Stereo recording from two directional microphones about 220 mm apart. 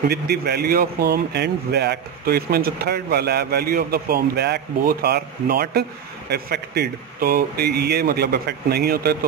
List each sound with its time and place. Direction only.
0.1 s speech: 45° right (ahead or behind)